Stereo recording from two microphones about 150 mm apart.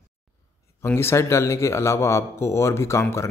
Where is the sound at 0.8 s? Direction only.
15° left (ahead or behind).